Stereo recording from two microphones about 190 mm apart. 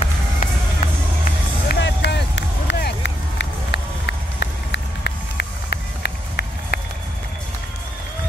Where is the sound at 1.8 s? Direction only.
65° left (ahead or behind).